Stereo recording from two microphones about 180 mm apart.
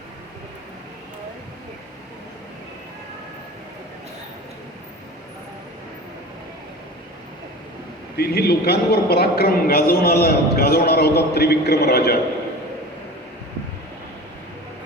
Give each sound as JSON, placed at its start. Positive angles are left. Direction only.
{"t": 8.1, "sound": "a man's voice", "side_deg": 60}